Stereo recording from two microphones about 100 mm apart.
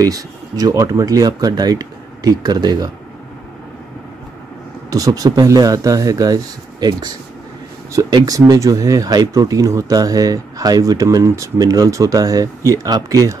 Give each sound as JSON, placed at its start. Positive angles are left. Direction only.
{"t": 0.0, "sound": "speech", "side_deg": -40}
{"t": 4.9, "sound": "speech", "side_deg": -35}
{"t": 7.9, "sound": "speech", "side_deg": -35}